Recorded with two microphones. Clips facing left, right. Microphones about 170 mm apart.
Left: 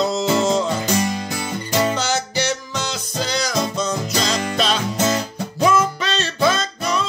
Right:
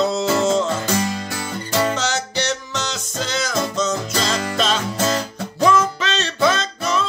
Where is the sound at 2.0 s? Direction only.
Centre (ahead or behind).